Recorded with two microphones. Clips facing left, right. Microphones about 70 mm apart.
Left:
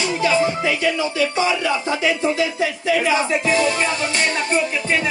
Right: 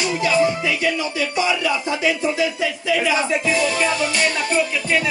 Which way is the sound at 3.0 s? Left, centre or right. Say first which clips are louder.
Even; left.